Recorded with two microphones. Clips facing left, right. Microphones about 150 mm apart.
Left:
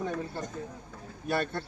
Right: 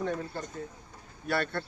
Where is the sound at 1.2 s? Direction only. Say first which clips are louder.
Even; 15° left (ahead or behind).